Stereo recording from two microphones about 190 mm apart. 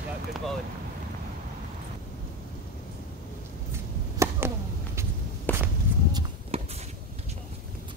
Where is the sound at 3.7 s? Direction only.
15° right (ahead or behind).